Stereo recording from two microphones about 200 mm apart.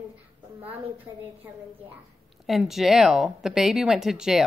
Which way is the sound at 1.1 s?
15° right (ahead or behind).